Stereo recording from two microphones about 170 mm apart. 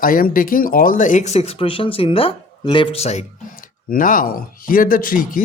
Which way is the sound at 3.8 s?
55° left (ahead or behind).